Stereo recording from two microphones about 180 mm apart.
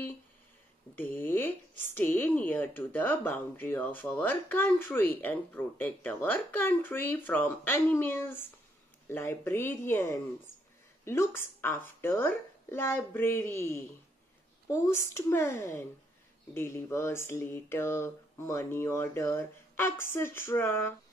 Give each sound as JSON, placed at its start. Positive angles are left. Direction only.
{"t": 0.9, "sound": "speech", "side_deg": 10}